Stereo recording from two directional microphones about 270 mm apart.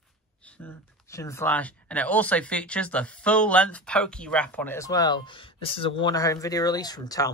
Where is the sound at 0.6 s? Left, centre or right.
Centre.